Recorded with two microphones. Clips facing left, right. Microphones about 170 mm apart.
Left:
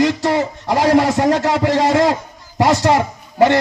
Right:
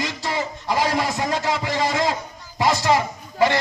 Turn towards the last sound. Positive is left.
turn(degrees=60)  # may be behind; listen again after turning